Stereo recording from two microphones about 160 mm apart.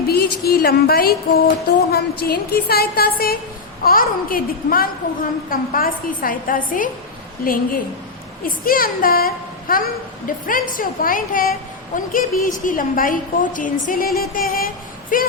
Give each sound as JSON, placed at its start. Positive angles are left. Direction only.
{"t": 0.1, "sound": "a woman's voice", "side_deg": 70}